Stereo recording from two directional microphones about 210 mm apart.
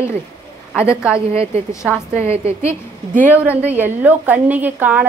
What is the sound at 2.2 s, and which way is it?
Speech, 30° right (ahead or behind).